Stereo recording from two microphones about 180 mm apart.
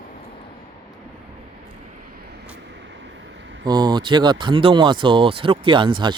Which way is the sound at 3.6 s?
25° right (ahead or behind).